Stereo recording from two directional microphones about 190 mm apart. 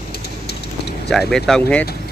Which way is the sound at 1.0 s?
5° left (ahead or behind).